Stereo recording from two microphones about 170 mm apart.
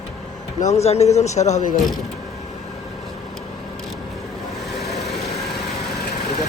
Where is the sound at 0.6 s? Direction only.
40° left (ahead or behind).